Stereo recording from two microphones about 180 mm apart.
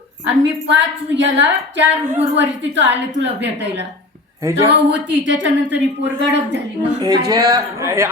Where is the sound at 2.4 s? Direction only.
85° right.